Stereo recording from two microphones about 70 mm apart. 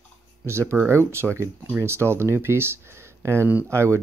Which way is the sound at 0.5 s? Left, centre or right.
Right.